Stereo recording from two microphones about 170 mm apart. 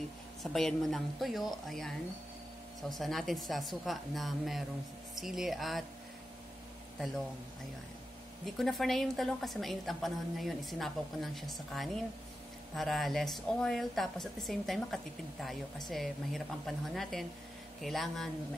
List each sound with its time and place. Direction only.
0.4 s a woman's voice: centre (ahead or behind)
8.5 s a woman's voice: centre (ahead or behind)